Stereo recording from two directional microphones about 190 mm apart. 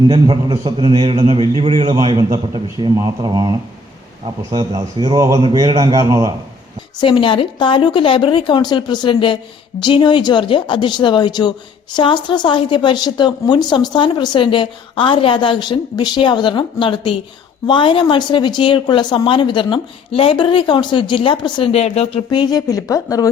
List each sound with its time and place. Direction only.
0.1 s a man's voice: 25° right (ahead or behind)
4.8 s a man's voice: 20° right (ahead or behind)
7.0 s a woman's voice: 25° left (ahead or behind)